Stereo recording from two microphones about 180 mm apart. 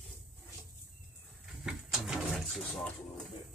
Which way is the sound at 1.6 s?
5° right (ahead or behind).